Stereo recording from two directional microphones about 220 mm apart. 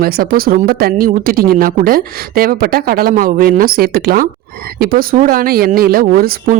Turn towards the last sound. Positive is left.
turn(degrees=-40)  # may be behind; listen again after turning